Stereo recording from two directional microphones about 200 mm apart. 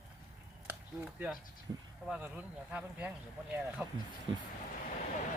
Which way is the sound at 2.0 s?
5° right (ahead or behind).